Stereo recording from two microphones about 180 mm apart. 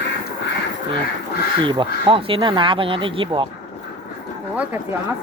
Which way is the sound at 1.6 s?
25° right (ahead or behind).